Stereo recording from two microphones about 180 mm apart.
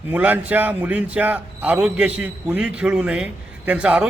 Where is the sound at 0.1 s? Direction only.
10° right (ahead or behind).